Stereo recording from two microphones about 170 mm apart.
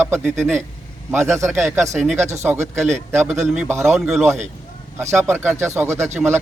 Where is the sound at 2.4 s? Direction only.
15° right (ahead or behind).